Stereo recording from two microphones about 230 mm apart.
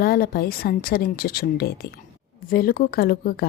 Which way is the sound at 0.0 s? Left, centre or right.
Left.